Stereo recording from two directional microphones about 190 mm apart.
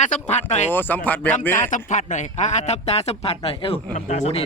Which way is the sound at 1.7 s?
40° left (ahead or behind).